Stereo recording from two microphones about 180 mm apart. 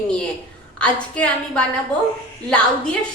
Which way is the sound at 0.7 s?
5° left (ahead or behind).